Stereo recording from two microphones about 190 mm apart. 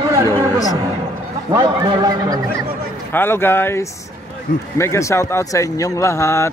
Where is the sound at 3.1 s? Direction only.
10° left (ahead or behind).